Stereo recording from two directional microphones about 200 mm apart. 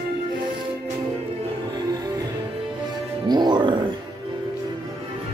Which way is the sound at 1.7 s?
20° right (ahead or behind).